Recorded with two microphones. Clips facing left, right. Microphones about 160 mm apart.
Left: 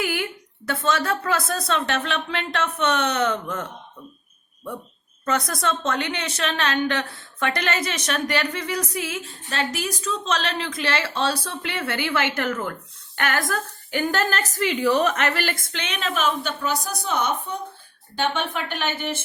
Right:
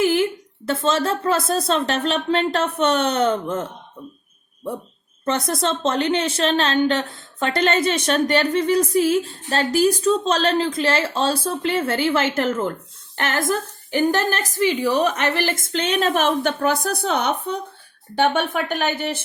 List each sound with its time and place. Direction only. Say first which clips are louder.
0.0 s a woman's voice: right 8 dB; 25° right (ahead or behind)
5.5 s a woman's voice: right 4 dB; 30° right (ahead or behind)
14.1 s a woman's voice: right 3 dB; 15° right (ahead or behind)
15.4 s a woman's voice: right 4 dB; 25° right (ahead or behind)
15.7 s a woman's voice: right 8 dB; 35° right (ahead or behind)
16.6 s a woman's voice: right 6 dB; 60° right (ahead or behind)
18.2 s a woman's voice: right 6 dB; 50° right (ahead or behind)